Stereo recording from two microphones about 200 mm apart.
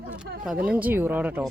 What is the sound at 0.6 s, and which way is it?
Speech, 10° right (ahead or behind).